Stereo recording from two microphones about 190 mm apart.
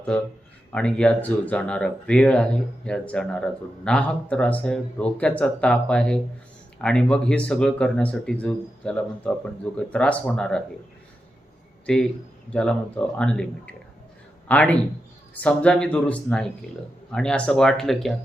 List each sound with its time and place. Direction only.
0.7 s speech: 5° left (ahead or behind)
12.5 s a man's voice: 5° left (ahead or behind)